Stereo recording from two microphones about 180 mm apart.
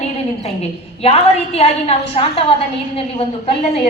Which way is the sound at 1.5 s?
35° left (ahead or behind).